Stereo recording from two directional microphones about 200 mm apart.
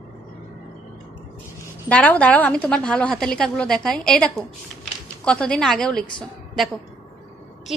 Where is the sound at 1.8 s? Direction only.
5° left (ahead or behind).